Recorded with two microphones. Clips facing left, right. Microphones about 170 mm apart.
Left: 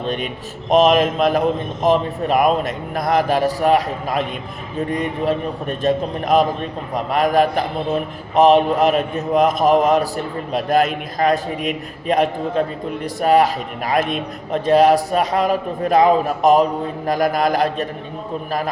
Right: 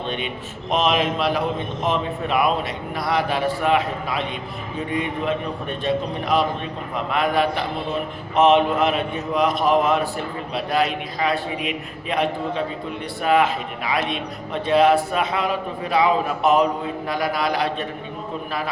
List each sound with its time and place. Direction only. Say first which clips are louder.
0.7 s a man's voice: left 7 dB; 45° left (ahead or behind)